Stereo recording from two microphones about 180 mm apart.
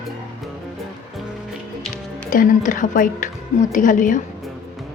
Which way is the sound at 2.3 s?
45° left (ahead or behind).